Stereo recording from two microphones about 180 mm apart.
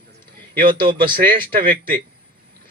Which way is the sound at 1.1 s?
50° right (ahead or behind).